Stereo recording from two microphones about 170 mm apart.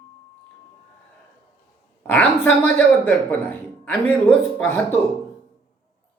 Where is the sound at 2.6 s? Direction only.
10° left (ahead or behind).